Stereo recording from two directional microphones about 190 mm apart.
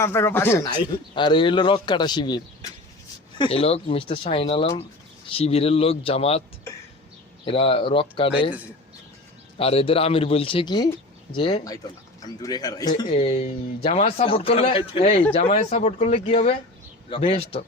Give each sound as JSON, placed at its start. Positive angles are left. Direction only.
{"t": 0.0, "sound": "speech", "side_deg": 15}
{"t": 7.4, "sound": "speech", "side_deg": 30}
{"t": 9.6, "sound": "speech", "side_deg": 30}